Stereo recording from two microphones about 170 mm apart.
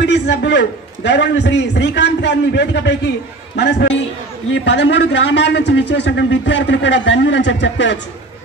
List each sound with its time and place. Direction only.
0.0 s a man's voice: 90° left